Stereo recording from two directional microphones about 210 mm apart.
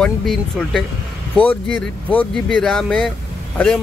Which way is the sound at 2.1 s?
5° left (ahead or behind).